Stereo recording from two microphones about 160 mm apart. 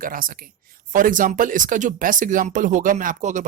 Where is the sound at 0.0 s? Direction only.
60° right (ahead or behind).